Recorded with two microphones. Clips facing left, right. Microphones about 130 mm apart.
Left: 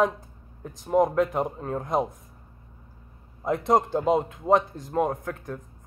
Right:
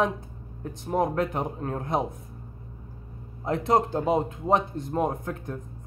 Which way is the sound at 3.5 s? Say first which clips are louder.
Left 1 dB; centre (ahead or behind).